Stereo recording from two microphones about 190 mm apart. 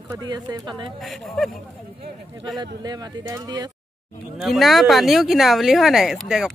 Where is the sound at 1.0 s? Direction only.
Centre (ahead or behind).